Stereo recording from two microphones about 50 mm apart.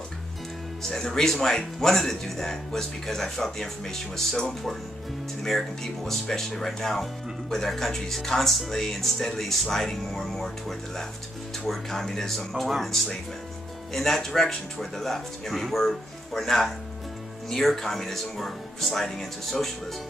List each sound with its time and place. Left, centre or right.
0.8 s speech: centre